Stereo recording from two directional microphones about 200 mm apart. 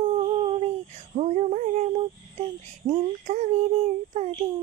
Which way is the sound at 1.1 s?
30° right (ahead or behind).